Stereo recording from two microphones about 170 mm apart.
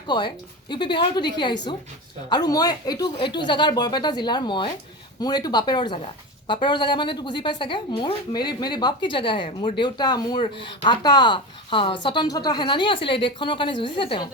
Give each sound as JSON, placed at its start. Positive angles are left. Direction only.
{"t": 0.1, "sound": "a woman's voice", "side_deg": 25}